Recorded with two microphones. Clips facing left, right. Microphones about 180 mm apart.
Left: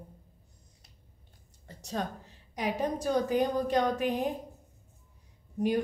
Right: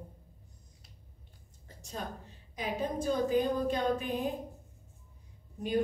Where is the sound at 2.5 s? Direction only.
75° left (ahead or behind).